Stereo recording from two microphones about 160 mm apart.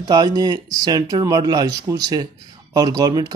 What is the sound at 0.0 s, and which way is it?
Speech, 25° right (ahead or behind).